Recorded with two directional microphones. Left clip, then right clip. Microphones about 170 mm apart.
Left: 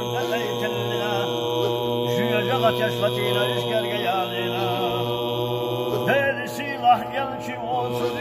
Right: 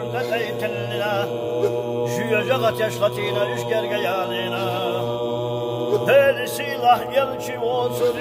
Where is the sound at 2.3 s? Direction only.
65° right (ahead or behind).